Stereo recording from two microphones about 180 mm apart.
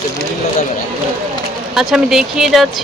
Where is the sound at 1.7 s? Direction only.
Centre (ahead or behind).